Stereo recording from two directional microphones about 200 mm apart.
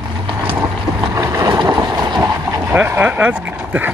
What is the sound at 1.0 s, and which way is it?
Vehicle, 15° right (ahead or behind).